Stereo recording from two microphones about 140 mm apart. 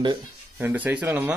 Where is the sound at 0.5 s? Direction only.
10° right (ahead or behind).